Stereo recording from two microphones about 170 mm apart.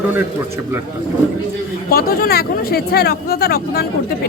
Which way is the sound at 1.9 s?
60° left (ahead or behind).